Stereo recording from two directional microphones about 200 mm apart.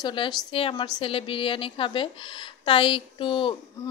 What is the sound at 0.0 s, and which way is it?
A woman's voice, 20° left (ahead or behind).